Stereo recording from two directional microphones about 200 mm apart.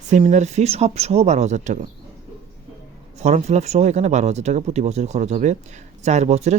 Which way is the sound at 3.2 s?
35° right (ahead or behind).